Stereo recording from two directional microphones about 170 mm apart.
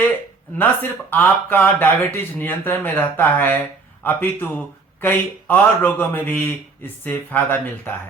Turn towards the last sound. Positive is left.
turn(degrees=10)  # may be behind; listen again after turning